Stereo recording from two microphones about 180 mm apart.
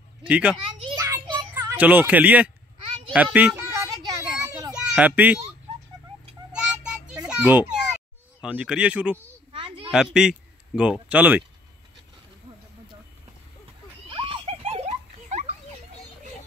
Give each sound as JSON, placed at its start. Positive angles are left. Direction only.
{"t": 0.2, "sound": "speech", "side_deg": -5}
{"t": 0.9, "sound": "children playing", "side_deg": -15}
{"t": 1.8, "sound": "a child's voice", "side_deg": -10}
{"t": 3.7, "sound": "a sound", "side_deg": -20}
{"t": 4.4, "sound": "children playing", "side_deg": -20}
{"t": 4.7, "sound": "a child's voice", "side_deg": -10}
{"t": 6.5, "sound": "child singing", "side_deg": -5}
{"t": 7.2, "sound": "a child's voice", "side_deg": -10}
{"t": 9.5, "sound": "a sound", "side_deg": -30}
{"t": 10.2, "sound": "speech", "side_deg": -5}
{"t": 14.0, "sound": "children playing", "side_deg": -30}